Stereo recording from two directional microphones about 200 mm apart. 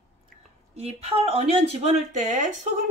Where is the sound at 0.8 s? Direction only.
30° right (ahead or behind).